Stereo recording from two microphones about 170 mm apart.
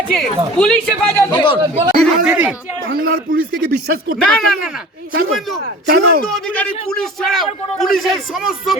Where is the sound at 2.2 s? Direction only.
10° right (ahead or behind).